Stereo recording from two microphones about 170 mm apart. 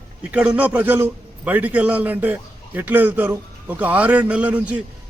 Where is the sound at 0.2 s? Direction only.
5° right (ahead or behind).